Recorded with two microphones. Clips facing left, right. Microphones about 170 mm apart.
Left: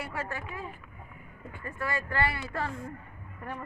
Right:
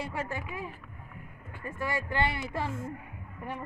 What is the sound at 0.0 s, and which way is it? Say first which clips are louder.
Speech: right 1 dB; 25° right (ahead or behind).